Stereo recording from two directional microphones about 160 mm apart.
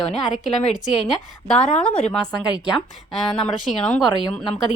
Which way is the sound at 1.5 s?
5° left (ahead or behind).